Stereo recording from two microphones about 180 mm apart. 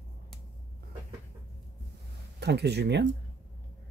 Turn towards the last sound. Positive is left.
turn(degrees=-70)  # may be behind; listen again after turning